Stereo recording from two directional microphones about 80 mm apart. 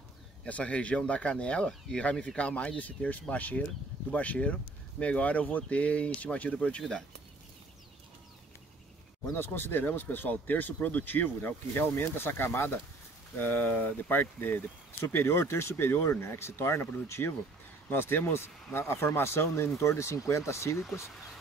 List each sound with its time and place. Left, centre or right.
0.5 s speech: centre
9.3 s speech: left